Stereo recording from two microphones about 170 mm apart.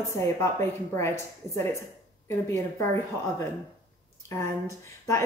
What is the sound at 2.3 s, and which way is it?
Speech, 15° left (ahead or behind).